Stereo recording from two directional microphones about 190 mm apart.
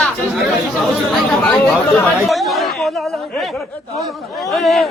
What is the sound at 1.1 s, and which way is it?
Speech, 10° left (ahead or behind).